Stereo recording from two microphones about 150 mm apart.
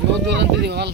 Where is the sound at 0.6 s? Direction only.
90° right.